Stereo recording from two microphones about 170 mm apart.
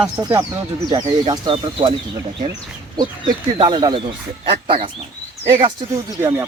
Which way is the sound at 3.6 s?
25° right (ahead or behind).